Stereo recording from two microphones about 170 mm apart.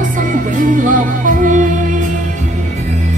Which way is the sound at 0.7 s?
50° right (ahead or behind).